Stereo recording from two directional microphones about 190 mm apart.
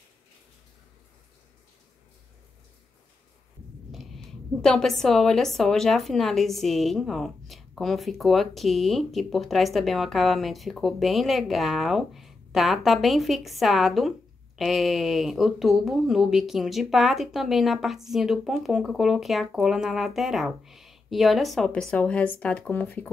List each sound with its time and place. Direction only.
4.6 s a woman's voice: 5° left (ahead or behind)